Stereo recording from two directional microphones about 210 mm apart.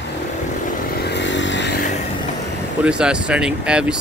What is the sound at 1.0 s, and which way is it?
Motorcycle, 55° left (ahead or behind).